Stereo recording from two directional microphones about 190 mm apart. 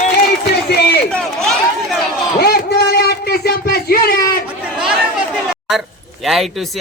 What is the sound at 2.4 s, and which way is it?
Speech, 55° left (ahead or behind).